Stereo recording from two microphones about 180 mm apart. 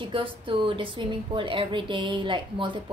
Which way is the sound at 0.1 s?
30° right (ahead or behind).